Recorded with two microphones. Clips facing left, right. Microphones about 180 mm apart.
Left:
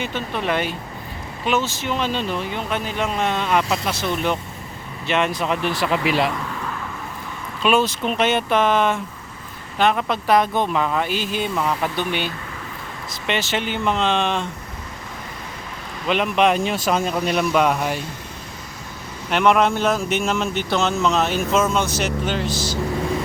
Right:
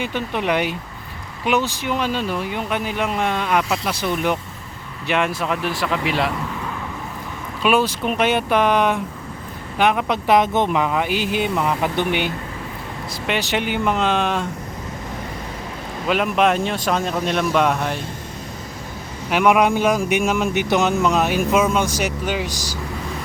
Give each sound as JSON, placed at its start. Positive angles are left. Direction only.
{"t": 0.0, "sound": "speech", "side_deg": -15}
{"t": 7.6, "sound": "speech", "side_deg": -10}
{"t": 16.0, "sound": "speech", "side_deg": -5}
{"t": 19.3, "sound": "speech", "side_deg": -10}